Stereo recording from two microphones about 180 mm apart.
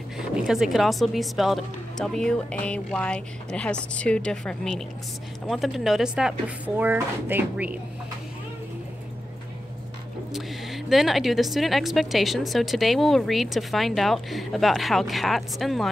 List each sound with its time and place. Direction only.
0.5 s a woman's voice: centre (ahead or behind)
10.3 s a woman's voice: centre (ahead or behind)